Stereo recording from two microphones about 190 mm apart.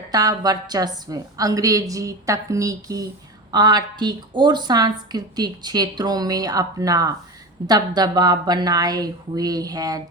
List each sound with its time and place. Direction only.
0.1 s a woman's voice: 20° right (ahead or behind)